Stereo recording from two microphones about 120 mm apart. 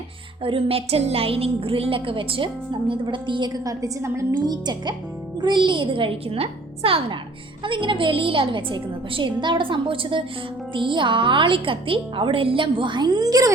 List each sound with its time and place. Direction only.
0.4 s a woman's voice: 50° right (ahead or behind); by 13.5 s 30° right (ahead or behind)